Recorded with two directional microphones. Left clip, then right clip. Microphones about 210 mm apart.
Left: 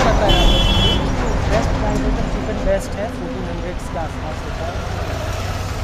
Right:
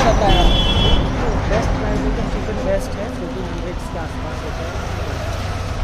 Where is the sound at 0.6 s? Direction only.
55° left (ahead or behind).